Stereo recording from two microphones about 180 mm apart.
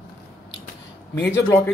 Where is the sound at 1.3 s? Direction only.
15° left (ahead or behind).